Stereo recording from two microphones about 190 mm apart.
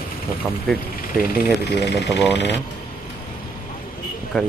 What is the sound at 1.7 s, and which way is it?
Speech, 65° left (ahead or behind).